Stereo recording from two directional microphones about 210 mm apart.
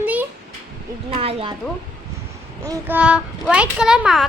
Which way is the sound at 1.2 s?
25° right (ahead or behind).